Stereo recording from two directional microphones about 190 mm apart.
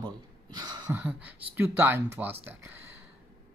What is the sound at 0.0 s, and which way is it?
Speech, 20° right (ahead or behind).